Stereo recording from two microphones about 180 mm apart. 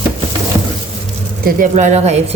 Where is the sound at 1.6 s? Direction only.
40° right (ahead or behind).